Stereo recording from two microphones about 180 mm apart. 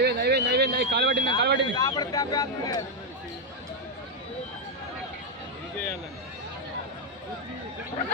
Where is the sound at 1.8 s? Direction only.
20° left (ahead or behind).